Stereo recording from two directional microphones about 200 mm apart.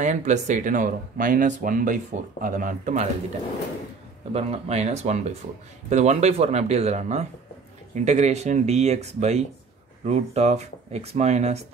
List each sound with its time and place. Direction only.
0.0 s speech: 35° right (ahead or behind)
4.3 s speech: 30° right (ahead or behind)